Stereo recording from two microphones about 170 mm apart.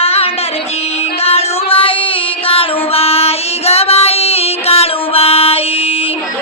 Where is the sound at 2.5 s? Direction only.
35° left (ahead or behind).